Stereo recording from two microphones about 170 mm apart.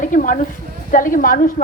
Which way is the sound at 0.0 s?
50° left (ahead or behind).